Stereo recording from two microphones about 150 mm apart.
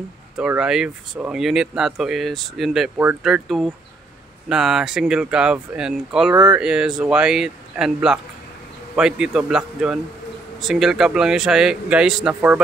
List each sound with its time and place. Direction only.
0.4 s speech: 5° right (ahead or behind)
6.3 s speech: 25° right (ahead or behind)
6.6 s speech: 5° right (ahead or behind)